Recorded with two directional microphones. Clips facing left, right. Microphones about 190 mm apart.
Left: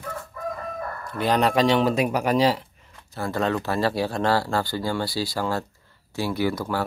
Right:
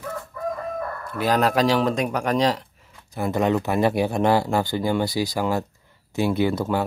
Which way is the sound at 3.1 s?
15° right (ahead or behind).